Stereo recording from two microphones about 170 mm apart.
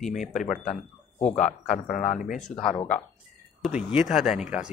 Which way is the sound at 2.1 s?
50° left (ahead or behind).